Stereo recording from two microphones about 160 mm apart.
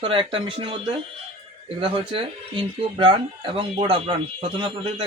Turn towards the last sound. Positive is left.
turn(degrees=-35)  # may be behind; listen again after turning